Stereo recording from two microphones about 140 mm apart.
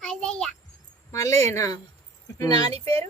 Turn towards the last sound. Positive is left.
turn(degrees=-45)  # may be behind; listen again after turning